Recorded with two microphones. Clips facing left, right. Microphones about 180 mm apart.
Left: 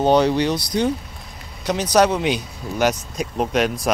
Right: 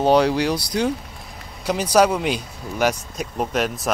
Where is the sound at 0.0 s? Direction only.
5° right (ahead or behind).